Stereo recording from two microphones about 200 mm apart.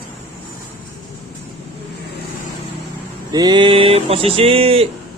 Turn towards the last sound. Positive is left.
turn(degrees=-30)  # may be behind; listen again after turning